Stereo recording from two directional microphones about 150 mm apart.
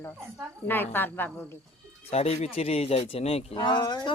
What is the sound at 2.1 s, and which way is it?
Speech, 45° left (ahead or behind).